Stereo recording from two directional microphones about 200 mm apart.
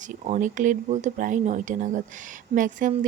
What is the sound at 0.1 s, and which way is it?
A woman's voice, 40° right (ahead or behind).